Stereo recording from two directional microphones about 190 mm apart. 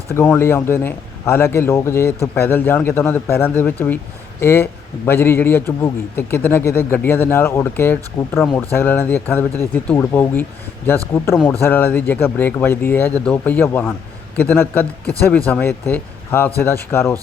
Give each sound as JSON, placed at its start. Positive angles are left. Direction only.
{"t": 0.1, "sound": "a man's voice", "side_deg": 15}
{"t": 11.6, "sound": "a man's voice", "side_deg": 10}